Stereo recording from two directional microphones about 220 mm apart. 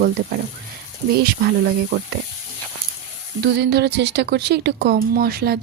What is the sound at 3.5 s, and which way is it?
Speech, 50° right (ahead or behind).